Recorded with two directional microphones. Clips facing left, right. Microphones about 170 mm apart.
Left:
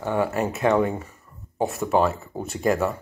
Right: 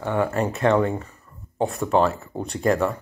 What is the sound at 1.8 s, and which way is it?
Speech, 5° left (ahead or behind).